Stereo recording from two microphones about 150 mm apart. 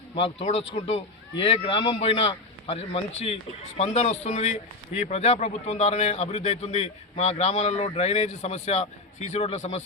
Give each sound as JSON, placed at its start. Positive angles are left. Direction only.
{"t": 0.2, "sound": "a man's voice", "side_deg": 45}